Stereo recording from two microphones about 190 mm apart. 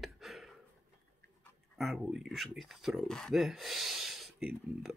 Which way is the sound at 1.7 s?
Centre (ahead or behind).